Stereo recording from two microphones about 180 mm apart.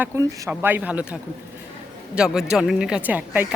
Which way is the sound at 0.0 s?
10° right (ahead or behind).